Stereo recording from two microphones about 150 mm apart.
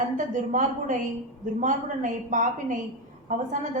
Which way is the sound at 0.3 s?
60° right (ahead or behind).